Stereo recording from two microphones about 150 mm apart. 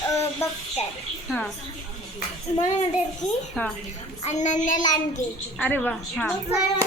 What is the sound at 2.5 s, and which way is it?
Speech, 45° left (ahead or behind).